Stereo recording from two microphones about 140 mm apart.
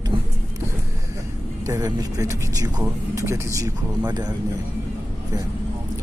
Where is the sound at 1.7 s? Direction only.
25° right (ahead or behind).